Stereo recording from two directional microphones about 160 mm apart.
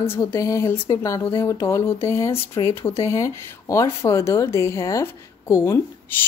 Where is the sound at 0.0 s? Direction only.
15° left (ahead or behind).